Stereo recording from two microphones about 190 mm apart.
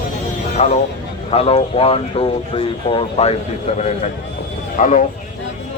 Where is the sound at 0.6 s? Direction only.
35° left (ahead or behind).